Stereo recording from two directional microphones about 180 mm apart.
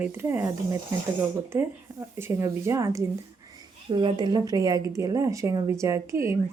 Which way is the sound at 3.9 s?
25° right (ahead or behind).